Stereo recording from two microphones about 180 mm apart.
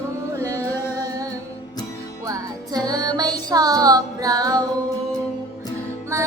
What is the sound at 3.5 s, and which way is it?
Child singing, 20° right (ahead or behind).